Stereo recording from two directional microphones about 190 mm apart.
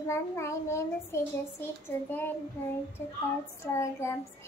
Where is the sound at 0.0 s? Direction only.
15° left (ahead or behind).